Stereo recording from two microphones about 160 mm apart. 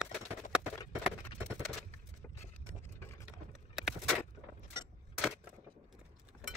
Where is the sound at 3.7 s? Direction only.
Centre (ahead or behind).